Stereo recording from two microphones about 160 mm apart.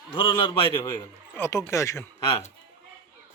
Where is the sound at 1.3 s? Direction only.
15° left (ahead or behind).